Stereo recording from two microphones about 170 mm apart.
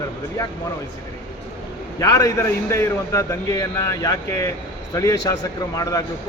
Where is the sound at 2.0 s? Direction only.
20° left (ahead or behind).